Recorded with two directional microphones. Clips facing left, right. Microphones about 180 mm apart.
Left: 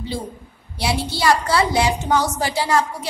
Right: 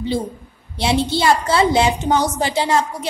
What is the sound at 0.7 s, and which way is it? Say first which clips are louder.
A woman's voice: right 5 dB; 25° right (ahead or behind).